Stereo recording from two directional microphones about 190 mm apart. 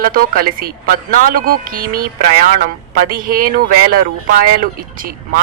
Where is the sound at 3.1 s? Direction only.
50° right (ahead or behind).